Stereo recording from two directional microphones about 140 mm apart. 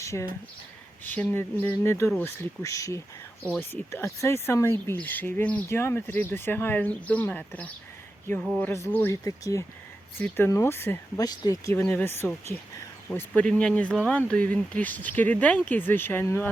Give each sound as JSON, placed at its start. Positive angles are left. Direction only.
{"t": 0.0, "sound": "speech", "side_deg": 20}